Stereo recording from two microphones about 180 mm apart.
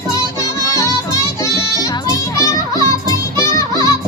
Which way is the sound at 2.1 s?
20° left (ahead or behind).